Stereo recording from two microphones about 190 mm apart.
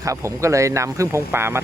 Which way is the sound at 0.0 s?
15° right (ahead or behind).